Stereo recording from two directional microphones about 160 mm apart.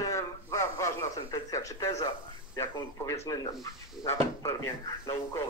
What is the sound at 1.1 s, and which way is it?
A man's voice, 20° left (ahead or behind).